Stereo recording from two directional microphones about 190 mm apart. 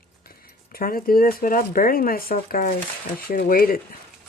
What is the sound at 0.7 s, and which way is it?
Speech, 50° left (ahead or behind).